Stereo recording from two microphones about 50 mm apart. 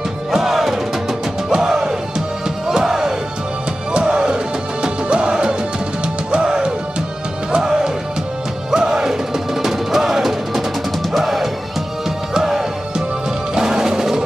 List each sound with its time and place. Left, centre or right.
0.3 s music: centre